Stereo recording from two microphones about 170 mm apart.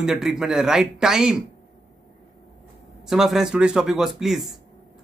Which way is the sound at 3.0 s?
Centre (ahead or behind).